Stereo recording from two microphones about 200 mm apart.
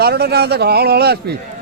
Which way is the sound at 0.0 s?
55° right (ahead or behind).